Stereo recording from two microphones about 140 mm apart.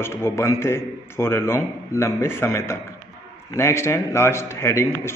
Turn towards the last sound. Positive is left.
turn(degrees=20)  # may be behind; listen again after turning